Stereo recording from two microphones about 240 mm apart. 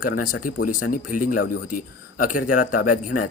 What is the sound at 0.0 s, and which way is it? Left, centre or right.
A man's voice, left.